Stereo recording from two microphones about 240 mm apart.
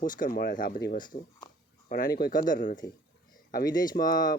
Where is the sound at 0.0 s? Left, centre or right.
Left.